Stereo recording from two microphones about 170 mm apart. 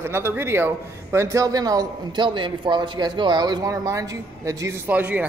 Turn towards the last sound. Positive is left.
turn(degrees=-10)  # may be behind; listen again after turning